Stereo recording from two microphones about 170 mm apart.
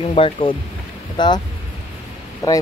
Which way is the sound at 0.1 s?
30° left (ahead or behind).